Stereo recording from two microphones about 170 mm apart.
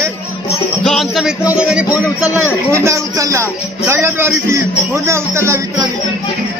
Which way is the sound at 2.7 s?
15° right (ahead or behind).